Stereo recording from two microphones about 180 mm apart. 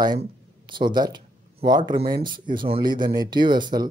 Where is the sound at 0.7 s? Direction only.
25° right (ahead or behind).